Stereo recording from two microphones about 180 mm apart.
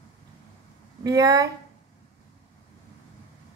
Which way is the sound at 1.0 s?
20° right (ahead or behind).